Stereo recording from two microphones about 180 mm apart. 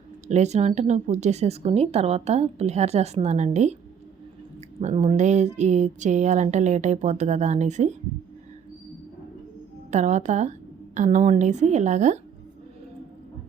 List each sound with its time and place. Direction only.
0.3 s speech: 40° right (ahead or behind)
4.8 s speech: 40° right (ahead or behind)
9.9 s speech: 40° right (ahead or behind)